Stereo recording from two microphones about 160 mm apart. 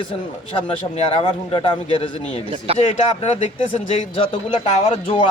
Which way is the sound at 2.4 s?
35° right (ahead or behind).